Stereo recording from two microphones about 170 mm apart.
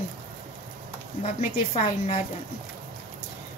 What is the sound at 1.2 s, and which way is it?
Speech, 45° left (ahead or behind).